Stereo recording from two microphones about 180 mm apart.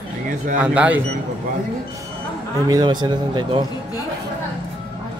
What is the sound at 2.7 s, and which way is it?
Speech, 25° right (ahead or behind).